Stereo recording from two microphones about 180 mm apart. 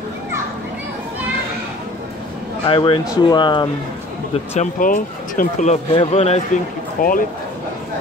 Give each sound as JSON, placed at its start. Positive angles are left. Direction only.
{"t": 2.6, "sound": "speech", "side_deg": 30}
{"t": 4.6, "sound": "speech", "side_deg": 50}
{"t": 7.0, "sound": "speech", "side_deg": 50}